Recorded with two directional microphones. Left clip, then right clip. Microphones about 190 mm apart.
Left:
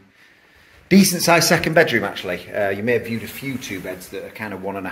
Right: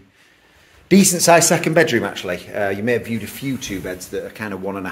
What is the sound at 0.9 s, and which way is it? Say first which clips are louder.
Speech: right 3 dB; 20° right (ahead or behind).